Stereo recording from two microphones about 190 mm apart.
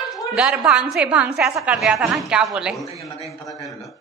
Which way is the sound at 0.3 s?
5° right (ahead or behind).